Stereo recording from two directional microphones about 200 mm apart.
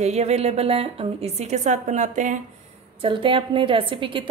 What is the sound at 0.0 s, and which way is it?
A woman's voice, 35° right (ahead or behind).